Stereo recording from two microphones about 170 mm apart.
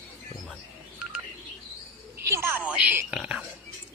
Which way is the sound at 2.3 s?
10° right (ahead or behind).